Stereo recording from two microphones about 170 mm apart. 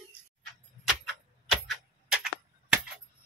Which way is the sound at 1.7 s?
5° right (ahead or behind).